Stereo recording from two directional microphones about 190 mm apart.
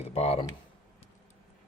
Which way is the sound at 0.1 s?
30° left (ahead or behind).